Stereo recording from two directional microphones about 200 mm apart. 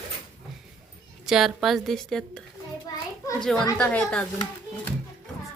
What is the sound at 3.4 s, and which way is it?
Speech, 5° left (ahead or behind).